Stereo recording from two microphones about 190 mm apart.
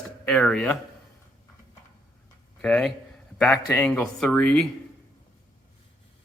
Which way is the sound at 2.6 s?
5° left (ahead or behind).